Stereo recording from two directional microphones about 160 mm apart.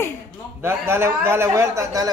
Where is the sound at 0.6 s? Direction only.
15° right (ahead or behind).